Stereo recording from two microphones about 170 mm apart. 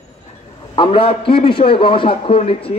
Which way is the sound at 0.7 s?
30° left (ahead or behind).